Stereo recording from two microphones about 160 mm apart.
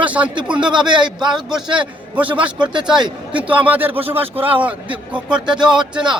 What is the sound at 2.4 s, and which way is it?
Speech, 30° right (ahead or behind).